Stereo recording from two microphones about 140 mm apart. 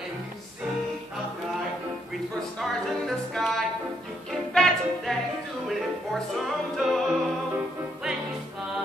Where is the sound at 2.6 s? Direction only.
Centre (ahead or behind).